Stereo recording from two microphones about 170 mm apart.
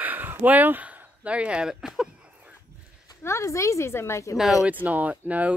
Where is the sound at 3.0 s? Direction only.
15° left (ahead or behind).